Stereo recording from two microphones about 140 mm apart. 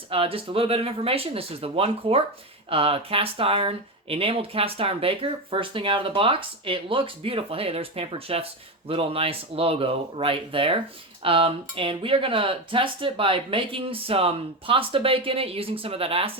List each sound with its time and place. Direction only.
0.1 s speech: 40° right (ahead or behind)